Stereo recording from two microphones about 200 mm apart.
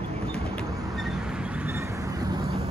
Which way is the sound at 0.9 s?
Centre (ahead or behind).